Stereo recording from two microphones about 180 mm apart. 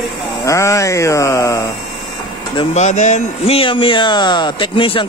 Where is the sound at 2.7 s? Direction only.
40° left (ahead or behind).